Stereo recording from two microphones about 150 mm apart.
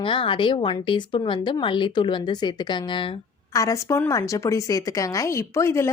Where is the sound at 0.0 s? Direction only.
35° left (ahead or behind).